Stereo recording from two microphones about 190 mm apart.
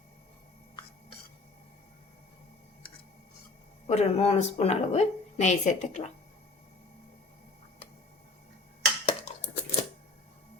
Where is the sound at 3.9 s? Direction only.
35° left (ahead or behind).